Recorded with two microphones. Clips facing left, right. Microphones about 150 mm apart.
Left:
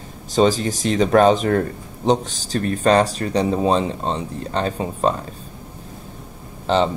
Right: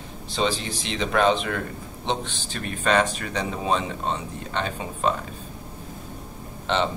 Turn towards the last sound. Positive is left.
turn(degrees=35)  # may be behind; listen again after turning